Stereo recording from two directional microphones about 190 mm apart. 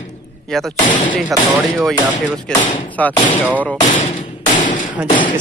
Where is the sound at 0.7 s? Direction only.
40° left (ahead or behind).